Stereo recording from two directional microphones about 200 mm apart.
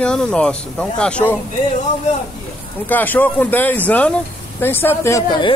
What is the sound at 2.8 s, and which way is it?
Speech, 10° left (ahead or behind).